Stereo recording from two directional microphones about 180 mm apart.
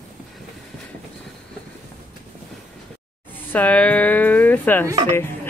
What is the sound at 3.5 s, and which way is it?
Speech, 10° left (ahead or behind).